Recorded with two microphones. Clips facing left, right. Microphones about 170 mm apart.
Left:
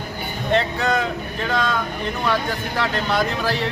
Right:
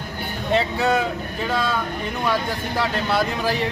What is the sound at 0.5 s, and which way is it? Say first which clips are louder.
Speech: even; 5° right (ahead or behind).